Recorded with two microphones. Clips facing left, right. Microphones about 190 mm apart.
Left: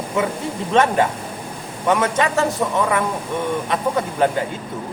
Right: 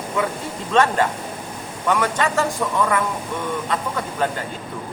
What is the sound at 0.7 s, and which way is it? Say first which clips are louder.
A man's voice: left 1 dB; 20° left (ahead or behind).